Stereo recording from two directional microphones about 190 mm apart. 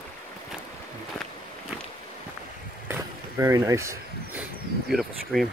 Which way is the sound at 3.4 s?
15° right (ahead or behind).